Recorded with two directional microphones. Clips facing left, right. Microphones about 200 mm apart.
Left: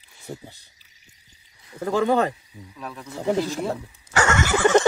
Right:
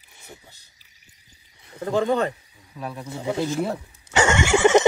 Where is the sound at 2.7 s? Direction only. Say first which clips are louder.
Right 4 dB; 30° right (ahead or behind).